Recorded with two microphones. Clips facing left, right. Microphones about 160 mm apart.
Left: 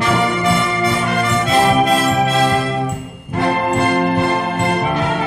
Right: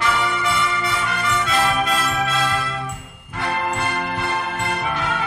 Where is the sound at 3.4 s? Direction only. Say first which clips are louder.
Left 7 dB; 35° left (ahead or behind).